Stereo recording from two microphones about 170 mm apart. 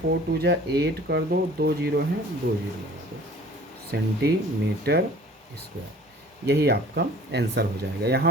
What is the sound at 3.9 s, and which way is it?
Speech, 75° right (ahead or behind).